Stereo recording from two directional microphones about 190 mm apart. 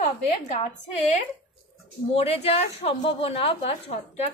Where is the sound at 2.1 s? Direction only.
30° left (ahead or behind).